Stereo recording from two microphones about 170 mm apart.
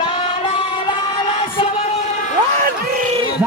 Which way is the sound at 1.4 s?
30° left (ahead or behind).